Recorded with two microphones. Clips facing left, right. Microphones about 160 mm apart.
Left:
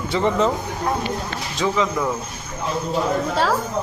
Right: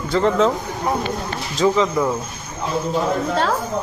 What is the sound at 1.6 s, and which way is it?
Speech, 15° right (ahead or behind).